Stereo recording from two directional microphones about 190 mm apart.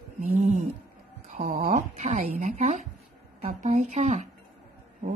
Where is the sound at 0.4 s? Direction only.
40° right (ahead or behind).